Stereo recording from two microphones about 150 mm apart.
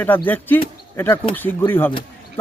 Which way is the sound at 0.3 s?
10° left (ahead or behind).